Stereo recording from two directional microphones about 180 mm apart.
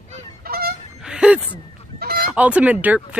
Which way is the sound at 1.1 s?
5° right (ahead or behind).